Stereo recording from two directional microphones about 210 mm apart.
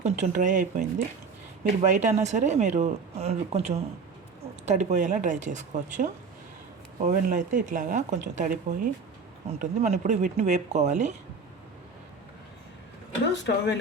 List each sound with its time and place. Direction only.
0.0 s speech: 35° right (ahead or behind)
13.3 s speech: 55° left (ahead or behind)